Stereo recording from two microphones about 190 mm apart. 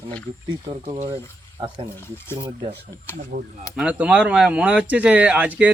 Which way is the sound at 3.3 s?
45° right (ahead or behind).